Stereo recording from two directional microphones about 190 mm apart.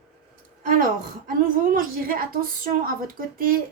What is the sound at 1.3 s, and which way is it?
A woman's voice, 50° right (ahead or behind).